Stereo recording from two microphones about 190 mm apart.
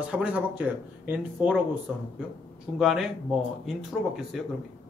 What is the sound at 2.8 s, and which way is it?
Speech, centre (ahead or behind).